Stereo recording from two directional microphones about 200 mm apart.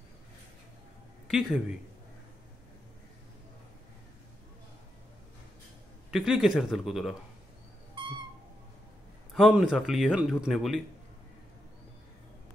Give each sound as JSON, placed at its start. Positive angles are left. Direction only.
{"t": 1.2, "sound": "speech", "side_deg": 0}
{"t": 6.1, "sound": "speech", "side_deg": 0}
{"t": 7.9, "sound": "owl", "side_deg": -25}
{"t": 9.3, "sound": "speech", "side_deg": 0}